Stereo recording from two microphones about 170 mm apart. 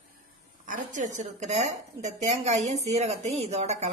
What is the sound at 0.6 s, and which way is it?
Speech, 50° right (ahead or behind).